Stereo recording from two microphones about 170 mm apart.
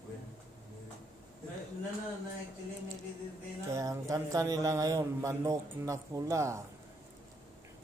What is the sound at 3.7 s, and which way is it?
A man's voice, 20° right (ahead or behind).